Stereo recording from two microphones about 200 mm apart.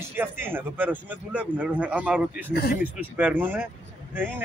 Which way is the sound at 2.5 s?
50° left (ahead or behind).